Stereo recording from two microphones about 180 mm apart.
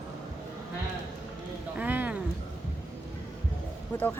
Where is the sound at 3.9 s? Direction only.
10° left (ahead or behind).